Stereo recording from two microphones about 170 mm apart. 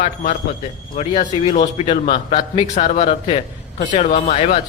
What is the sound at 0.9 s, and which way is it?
A man's voice, 40° left (ahead or behind).